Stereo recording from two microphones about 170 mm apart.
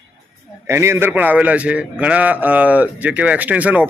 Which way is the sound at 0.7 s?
15° right (ahead or behind).